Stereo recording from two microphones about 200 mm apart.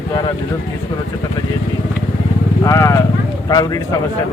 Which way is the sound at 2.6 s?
15° left (ahead or behind).